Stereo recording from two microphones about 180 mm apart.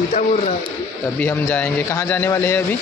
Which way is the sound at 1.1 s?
10° left (ahead or behind).